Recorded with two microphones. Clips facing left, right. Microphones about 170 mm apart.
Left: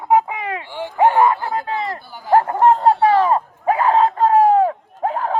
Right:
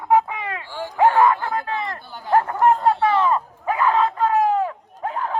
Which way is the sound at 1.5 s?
25° left (ahead or behind).